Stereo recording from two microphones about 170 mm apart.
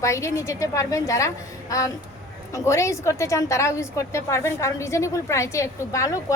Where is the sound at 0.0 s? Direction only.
15° left (ahead or behind).